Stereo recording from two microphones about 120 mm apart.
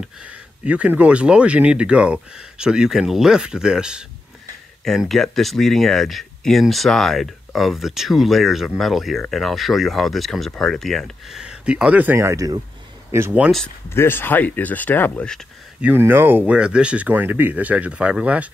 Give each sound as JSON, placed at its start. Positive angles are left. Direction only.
{"t": 0.7, "sound": "speech", "side_deg": -10}
{"t": 13.8, "sound": "speech", "side_deg": 20}
{"t": 15.8, "sound": "speech", "side_deg": -15}